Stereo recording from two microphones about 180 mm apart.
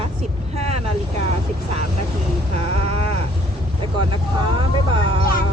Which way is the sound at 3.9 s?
30° right (ahead or behind).